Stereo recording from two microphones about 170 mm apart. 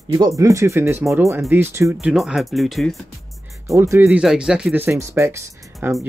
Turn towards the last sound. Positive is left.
turn(degrees=-15)  # may be behind; listen again after turning